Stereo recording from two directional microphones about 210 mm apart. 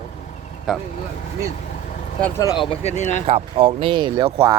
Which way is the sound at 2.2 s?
10° left (ahead or behind).